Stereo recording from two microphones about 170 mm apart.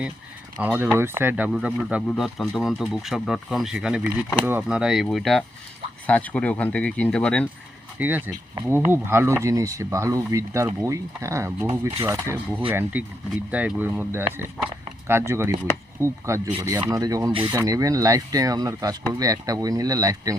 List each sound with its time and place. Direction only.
0.6 s speech: 10° right (ahead or behind); by 7.4 s 5° left (ahead or behind)
7.9 s speech: 10° right (ahead or behind)
11.7 s speech: 30° right (ahead or behind)
12.0 s speech: 15° right (ahead or behind)